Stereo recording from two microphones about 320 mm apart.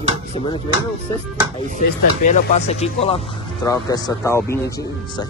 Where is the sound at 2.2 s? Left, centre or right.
Left.